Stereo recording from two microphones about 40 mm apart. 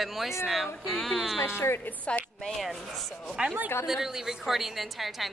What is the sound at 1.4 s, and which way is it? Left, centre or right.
Speech, left.